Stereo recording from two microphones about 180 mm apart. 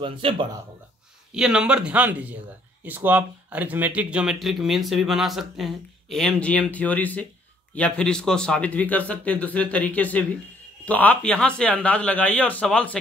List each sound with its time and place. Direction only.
0.0 s speech: 30° right (ahead or behind)
1.3 s a man's voice: 5° right (ahead or behind)